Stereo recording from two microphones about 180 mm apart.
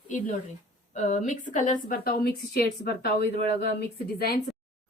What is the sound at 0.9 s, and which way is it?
A woman's voice, 40° left (ahead or behind).